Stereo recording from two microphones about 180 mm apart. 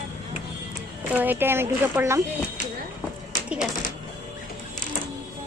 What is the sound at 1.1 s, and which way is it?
A woman's voice, 10° right (ahead or behind).